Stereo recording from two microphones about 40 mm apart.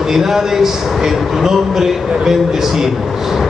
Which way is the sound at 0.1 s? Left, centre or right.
Centre.